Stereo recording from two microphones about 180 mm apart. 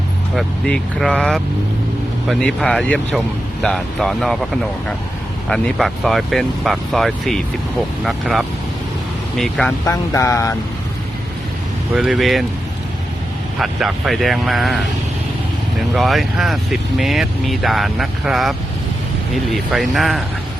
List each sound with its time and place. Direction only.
0.3 s speech: 5° left (ahead or behind)
5.5 s speech: centre (ahead or behind)
9.8 s a sound: 15° left (ahead or behind)
11.9 s speech: centre (ahead or behind)
13.6 s speech: 5° right (ahead or behind)
16.0 s speech: centre (ahead or behind)